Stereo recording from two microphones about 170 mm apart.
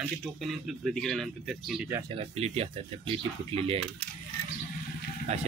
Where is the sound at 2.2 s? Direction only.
35° right (ahead or behind).